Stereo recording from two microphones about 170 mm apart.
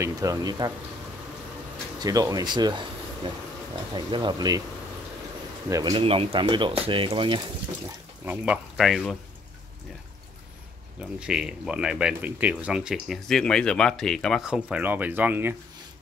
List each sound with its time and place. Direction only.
0.0 s speech: 20° right (ahead or behind)
2.0 s speech: 20° right (ahead or behind)
3.9 s speech: 25° right (ahead or behind)
5.7 s speech: 20° right (ahead or behind)
8.3 s speech: 5° right (ahead or behind)
11.0 s speech: 5° right (ahead or behind)